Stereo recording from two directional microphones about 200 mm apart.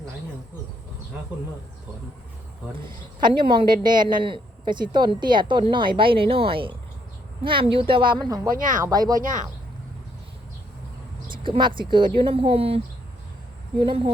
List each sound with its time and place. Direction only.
2.7 s a woman's voice: 25° right (ahead or behind)
8.4 s speech: 40° right (ahead or behind)
8.8 s a woman's voice: 20° right (ahead or behind)
11.4 s a woman's voice: 25° right (ahead or behind)